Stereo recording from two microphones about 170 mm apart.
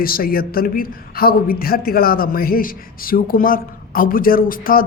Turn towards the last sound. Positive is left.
turn(degrees=55)  # may be behind; listen again after turning